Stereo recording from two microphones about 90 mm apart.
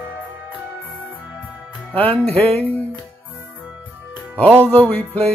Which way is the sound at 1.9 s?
20° left (ahead or behind).